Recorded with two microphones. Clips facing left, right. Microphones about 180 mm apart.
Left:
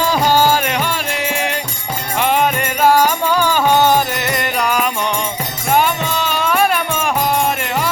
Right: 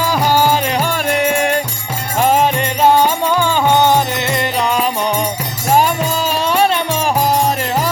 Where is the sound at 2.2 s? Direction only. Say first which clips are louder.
Right 3 dB; 40° right (ahead or behind).